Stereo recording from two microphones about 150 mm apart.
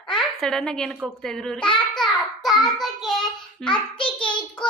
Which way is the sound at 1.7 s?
Centre (ahead or behind).